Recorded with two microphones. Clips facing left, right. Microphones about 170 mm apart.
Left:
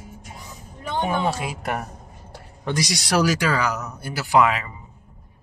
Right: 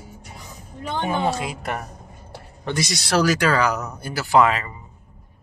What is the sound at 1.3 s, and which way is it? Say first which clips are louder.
Speech: even; 10° left (ahead or behind).